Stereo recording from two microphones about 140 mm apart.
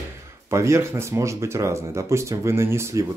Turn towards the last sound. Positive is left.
turn(degrees=-20)  # may be behind; listen again after turning